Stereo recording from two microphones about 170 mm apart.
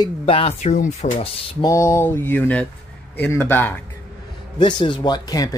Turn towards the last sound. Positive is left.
turn(degrees=20)  # may be behind; listen again after turning